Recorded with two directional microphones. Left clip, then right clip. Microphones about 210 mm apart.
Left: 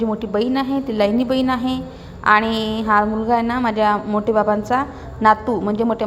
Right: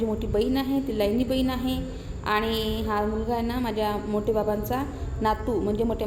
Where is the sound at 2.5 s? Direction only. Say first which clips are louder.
Left 5 dB; 35° left (ahead or behind).